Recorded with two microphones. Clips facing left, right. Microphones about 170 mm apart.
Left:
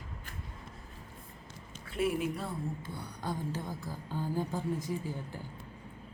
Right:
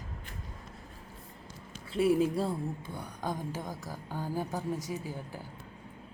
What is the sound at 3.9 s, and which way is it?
Speech, 10° right (ahead or behind).